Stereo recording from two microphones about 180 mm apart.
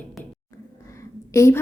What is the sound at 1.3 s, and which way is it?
Speech, 15° left (ahead or behind).